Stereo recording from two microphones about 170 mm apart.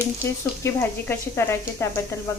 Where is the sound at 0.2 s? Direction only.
15° left (ahead or behind).